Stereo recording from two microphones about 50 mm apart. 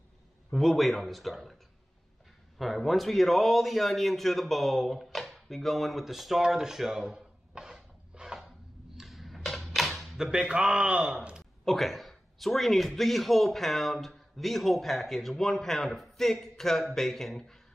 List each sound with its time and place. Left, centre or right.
0.5 s a man's voice: centre
2.6 s a man's voice: centre
6.4 s a sound: centre
8.4 s typewriter: centre
10.1 s a man's voice: centre
11.6 s a man's voice: centre